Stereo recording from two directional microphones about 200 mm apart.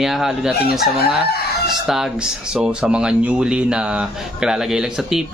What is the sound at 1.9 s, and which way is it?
Speech, 5° right (ahead or behind).